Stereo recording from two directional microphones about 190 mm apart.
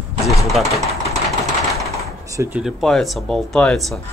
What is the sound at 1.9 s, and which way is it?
Door, 15° right (ahead or behind).